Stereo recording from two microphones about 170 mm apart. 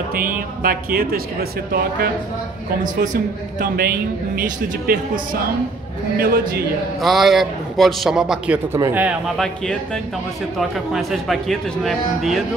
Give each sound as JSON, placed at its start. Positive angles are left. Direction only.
{"t": 0.1, "sound": "speech", "side_deg": -60}
{"t": 3.5, "sound": "speech", "side_deg": -65}
{"t": 7.0, "sound": "a man's voice", "side_deg": 0}
{"t": 8.7, "sound": "speech", "side_deg": -15}
{"t": 10.9, "sound": "a man's voice", "side_deg": 0}